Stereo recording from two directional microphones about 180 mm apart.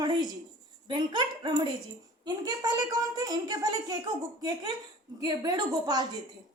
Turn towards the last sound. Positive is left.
turn(degrees=-20)  # may be behind; listen again after turning